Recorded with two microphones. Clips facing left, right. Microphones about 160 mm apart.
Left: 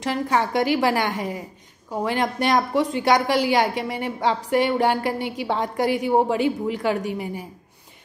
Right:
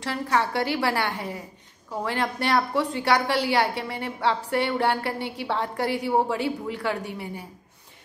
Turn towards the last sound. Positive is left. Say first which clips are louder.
# left 6 dB
turn(degrees=15)  # may be behind; listen again after turning